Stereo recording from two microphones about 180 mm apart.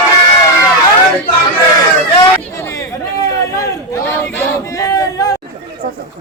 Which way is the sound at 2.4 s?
15° left (ahead or behind).